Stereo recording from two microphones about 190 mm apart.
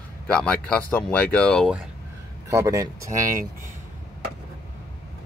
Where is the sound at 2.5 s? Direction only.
15° right (ahead or behind).